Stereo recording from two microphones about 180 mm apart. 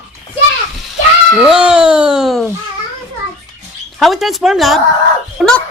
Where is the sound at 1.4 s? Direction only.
5° right (ahead or behind).